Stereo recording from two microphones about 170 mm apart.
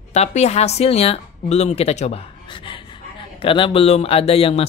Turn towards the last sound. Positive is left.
turn(degrees=35)  # may be behind; listen again after turning